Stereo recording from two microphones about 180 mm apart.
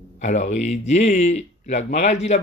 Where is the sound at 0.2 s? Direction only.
40° left (ahead or behind).